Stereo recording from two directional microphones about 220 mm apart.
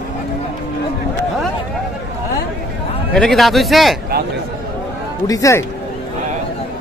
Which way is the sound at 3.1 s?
Centre (ahead or behind).